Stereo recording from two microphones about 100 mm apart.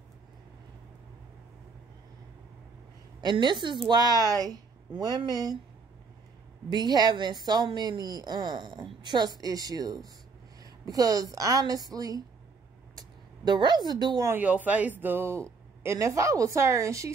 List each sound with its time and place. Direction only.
3.2 s a woman's voice: 50° right (ahead or behind)
6.7 s a woman's voice: 45° right (ahead or behind)
12.9 s a sound: 45° right (ahead or behind)
14.4 s a man's voice: 15° right (ahead or behind); by 17.1 s 30° right (ahead or behind)